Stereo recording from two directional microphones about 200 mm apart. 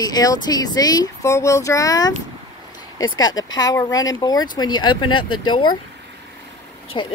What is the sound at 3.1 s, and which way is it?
Speech, 75° left (ahead or behind).